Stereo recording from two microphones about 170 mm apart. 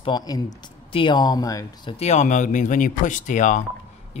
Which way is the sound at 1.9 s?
40° left (ahead or behind).